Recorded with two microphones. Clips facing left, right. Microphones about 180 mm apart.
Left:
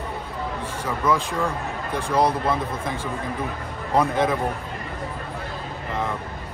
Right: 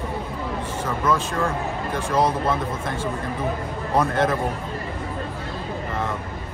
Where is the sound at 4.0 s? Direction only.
10° left (ahead or behind).